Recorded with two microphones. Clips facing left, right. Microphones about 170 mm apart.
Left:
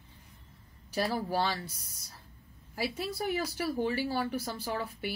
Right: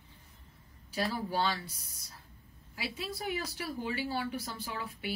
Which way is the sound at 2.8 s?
45° left (ahead or behind).